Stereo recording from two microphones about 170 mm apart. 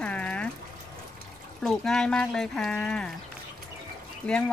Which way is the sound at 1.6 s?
5° left (ahead or behind).